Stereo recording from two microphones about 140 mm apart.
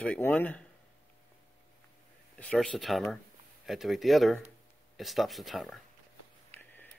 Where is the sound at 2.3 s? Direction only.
5° left (ahead or behind).